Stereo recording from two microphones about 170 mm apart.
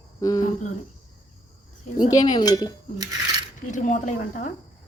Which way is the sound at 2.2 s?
25° left (ahead or behind).